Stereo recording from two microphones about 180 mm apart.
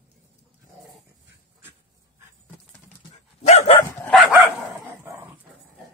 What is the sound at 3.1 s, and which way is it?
Dog, 40° left (ahead or behind).